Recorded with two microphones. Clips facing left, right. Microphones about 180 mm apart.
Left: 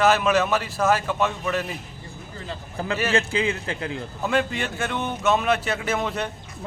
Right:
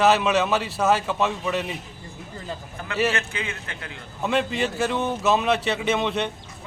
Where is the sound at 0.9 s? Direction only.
Centre (ahead or behind).